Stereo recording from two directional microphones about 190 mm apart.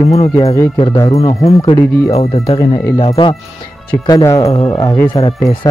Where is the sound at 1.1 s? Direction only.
30° left (ahead or behind).